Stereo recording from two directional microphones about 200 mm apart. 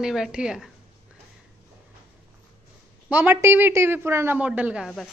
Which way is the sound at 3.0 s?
10° right (ahead or behind).